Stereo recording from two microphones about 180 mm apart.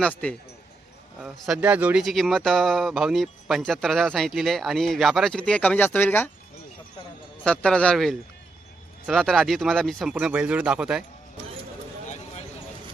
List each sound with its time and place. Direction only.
0.0 s speech: 5° left (ahead or behind)
1.2 s speech: 5° right (ahead or behind)
7.4 s speech: 5° left (ahead or behind)
12.0 s a sound: 40° left (ahead or behind)